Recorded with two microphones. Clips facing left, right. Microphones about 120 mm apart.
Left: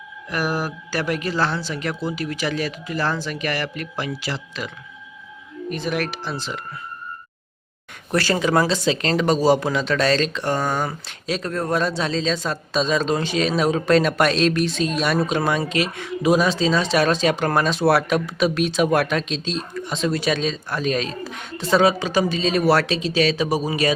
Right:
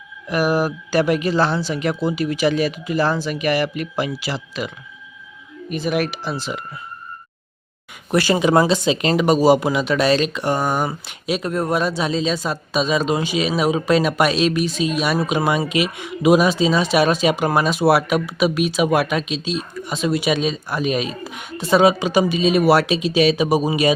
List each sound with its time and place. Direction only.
0.3 s speech: 15° right (ahead or behind)
5.7 s speech: 10° right (ahead or behind)
8.1 s speech: 15° right (ahead or behind)